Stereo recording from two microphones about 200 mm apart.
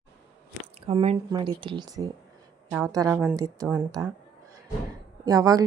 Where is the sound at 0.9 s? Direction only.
25° right (ahead or behind).